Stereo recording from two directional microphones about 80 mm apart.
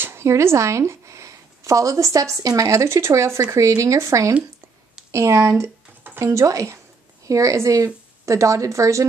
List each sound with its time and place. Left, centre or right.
0.0 s speech: right